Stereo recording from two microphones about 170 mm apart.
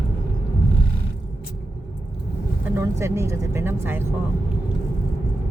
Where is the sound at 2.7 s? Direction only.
15° right (ahead or behind).